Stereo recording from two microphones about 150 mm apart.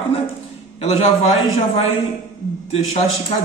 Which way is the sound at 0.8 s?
40° left (ahead or behind).